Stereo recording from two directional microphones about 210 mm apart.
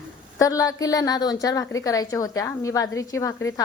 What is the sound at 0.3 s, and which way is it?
A woman's voice, 15° left (ahead or behind).